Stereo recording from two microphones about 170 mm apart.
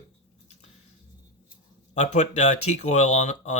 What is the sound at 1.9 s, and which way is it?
Speech, 45° left (ahead or behind).